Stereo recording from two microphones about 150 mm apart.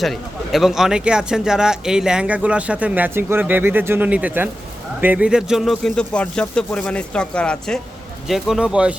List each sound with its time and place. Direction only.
0.0 s speech: centre (ahead or behind)